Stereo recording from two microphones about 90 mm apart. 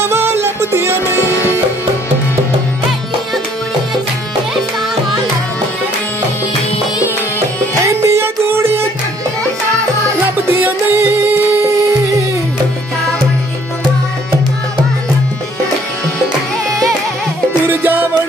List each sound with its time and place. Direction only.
0.0 s music: 25° right (ahead or behind)
1.2 s sitar: 30° left (ahead or behind)
7.3 s music: 35° right (ahead or behind)
10.4 s music: 25° right (ahead or behind)
17.6 s music: 25° right (ahead or behind)